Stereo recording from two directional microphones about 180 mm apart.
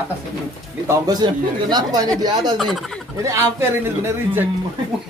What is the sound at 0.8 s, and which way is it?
Speech, 20° right (ahead or behind).